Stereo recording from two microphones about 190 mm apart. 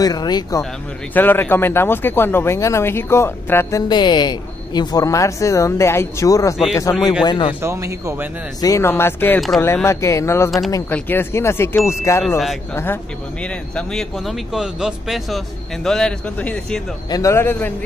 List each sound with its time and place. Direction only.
0.0 s speech: 20° left (ahead or behind)
3.9 s speech: 25° left (ahead or behind)
7.6 s speech: 15° right (ahead or behind)
8.5 s speech: 15° left (ahead or behind)